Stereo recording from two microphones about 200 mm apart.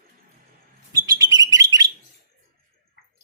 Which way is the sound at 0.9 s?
20° right (ahead or behind).